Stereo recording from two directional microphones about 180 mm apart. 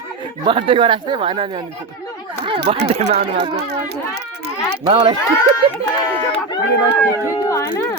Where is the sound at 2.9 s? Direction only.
40° right (ahead or behind).